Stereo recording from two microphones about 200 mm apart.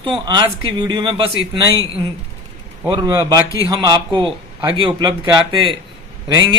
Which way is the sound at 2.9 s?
20° right (ahead or behind).